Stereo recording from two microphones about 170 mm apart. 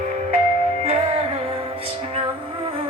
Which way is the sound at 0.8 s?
35° right (ahead or behind).